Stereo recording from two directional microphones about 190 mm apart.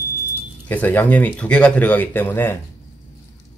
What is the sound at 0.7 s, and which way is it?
Speech, 10° left (ahead or behind).